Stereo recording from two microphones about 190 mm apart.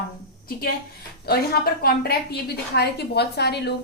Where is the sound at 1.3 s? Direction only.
55° left (ahead or behind).